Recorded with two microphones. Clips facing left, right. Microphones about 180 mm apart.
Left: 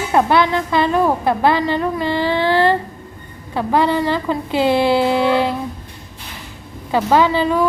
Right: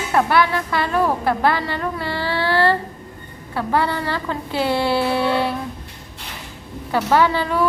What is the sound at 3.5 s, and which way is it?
A woman's voice, 20° left (ahead or behind).